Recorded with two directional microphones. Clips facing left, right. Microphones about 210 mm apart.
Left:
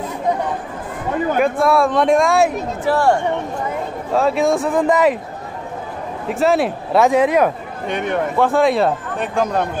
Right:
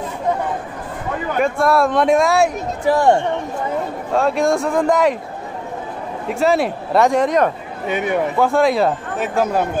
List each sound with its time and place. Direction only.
1.4 s speech: centre (ahead or behind)
2.8 s speech: 15° right (ahead or behind)
4.1 s speech: centre (ahead or behind)
6.2 s speech: centre (ahead or behind)
7.8 s speech: 5° right (ahead or behind)